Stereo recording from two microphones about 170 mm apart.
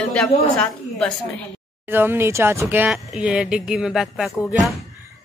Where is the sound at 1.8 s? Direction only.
10° right (ahead or behind).